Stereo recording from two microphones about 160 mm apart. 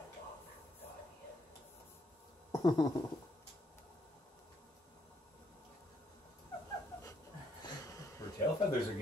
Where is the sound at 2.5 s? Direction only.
25° left (ahead or behind).